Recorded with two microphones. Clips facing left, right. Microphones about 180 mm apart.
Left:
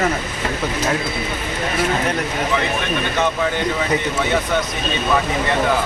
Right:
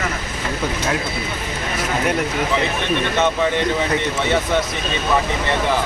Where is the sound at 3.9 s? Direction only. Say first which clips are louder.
Even; centre (ahead or behind).